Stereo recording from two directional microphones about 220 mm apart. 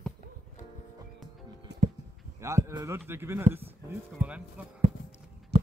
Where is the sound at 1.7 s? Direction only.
50° right (ahead or behind).